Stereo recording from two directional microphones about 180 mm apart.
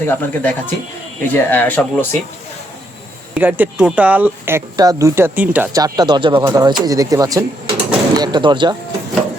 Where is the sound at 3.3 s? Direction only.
10° right (ahead or behind).